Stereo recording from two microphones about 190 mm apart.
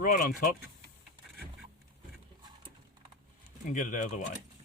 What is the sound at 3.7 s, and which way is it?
Speech, 40° left (ahead or behind).